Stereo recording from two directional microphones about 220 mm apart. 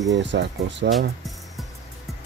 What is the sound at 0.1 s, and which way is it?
Speech, 55° right (ahead or behind).